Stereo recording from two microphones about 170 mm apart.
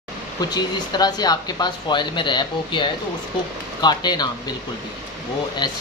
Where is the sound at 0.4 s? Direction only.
25° left (ahead or behind).